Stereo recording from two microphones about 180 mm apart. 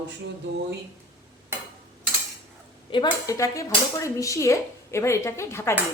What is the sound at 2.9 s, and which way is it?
Speech, 20° left (ahead or behind).